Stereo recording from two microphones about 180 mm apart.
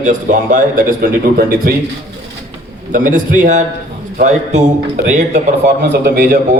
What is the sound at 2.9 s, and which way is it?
A man's voice, 50° right (ahead or behind).